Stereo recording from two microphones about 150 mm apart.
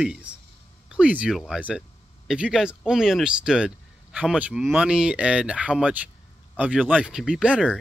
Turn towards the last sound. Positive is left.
turn(degrees=-5)  # may be behind; listen again after turning